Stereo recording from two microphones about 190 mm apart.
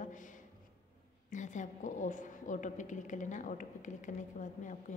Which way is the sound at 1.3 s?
40° left (ahead or behind).